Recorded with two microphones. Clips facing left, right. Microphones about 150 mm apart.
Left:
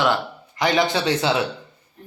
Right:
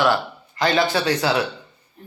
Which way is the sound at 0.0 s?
15° left (ahead or behind).